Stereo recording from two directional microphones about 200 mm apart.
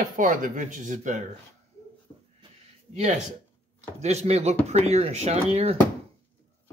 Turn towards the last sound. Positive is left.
turn(degrees=-30)  # may be behind; listen again after turning